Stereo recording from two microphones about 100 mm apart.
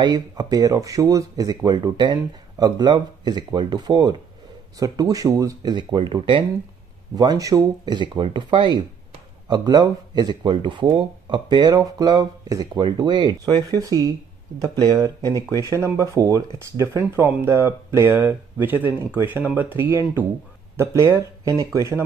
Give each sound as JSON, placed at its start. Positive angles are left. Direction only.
{"t": 0.0, "sound": "speech", "side_deg": -40}
{"t": 7.2, "sound": "speech", "side_deg": -40}
{"t": 12.8, "sound": "speech", "side_deg": -50}
{"t": 13.8, "sound": "speech", "side_deg": -35}